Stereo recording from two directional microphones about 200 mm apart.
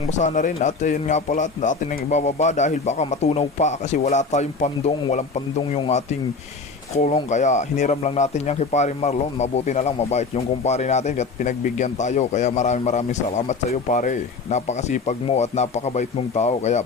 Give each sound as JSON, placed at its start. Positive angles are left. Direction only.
{"t": 0.1, "sound": "speech", "side_deg": 40}
{"t": 7.3, "sound": "speech", "side_deg": 35}